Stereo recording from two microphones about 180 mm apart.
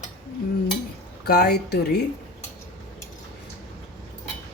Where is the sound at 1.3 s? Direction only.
65° left (ahead or behind).